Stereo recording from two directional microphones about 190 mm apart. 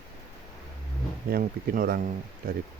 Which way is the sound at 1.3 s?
50° right (ahead or behind).